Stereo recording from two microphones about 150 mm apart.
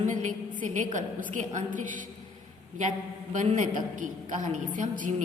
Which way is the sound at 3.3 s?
55° right (ahead or behind).